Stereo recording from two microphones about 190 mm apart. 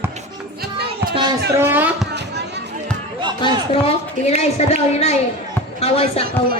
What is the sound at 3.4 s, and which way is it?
A woman's voice, 30° left (ahead or behind).